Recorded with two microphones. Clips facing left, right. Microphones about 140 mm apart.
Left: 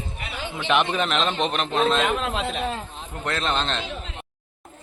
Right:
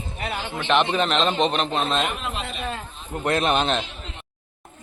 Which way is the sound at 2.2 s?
90° left.